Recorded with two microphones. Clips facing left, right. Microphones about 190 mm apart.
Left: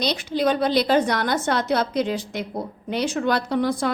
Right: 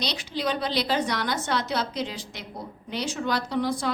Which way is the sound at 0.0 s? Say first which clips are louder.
Left 7 dB; 50° left (ahead or behind).